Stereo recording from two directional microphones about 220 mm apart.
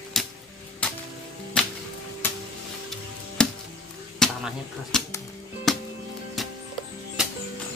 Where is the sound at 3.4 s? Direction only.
5° left (ahead or behind).